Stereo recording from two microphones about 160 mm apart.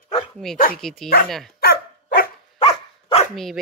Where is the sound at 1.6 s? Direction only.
80° left.